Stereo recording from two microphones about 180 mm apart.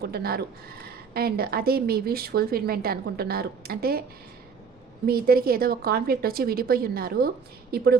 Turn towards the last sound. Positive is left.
turn(degrees=-55)  # may be behind; listen again after turning